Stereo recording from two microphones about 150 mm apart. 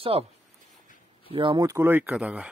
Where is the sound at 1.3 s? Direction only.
30° right (ahead or behind).